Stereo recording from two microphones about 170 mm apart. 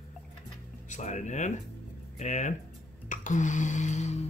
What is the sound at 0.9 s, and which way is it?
Speech, 45° left (ahead or behind).